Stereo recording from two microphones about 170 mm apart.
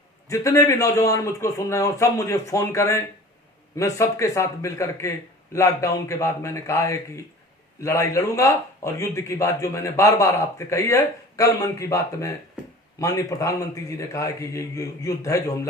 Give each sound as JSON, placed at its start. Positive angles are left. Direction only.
{"t": 0.3, "sound": "a man's voice", "side_deg": 15}